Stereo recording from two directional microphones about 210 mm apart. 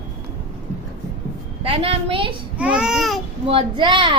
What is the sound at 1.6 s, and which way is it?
Speech, 25° right (ahead or behind).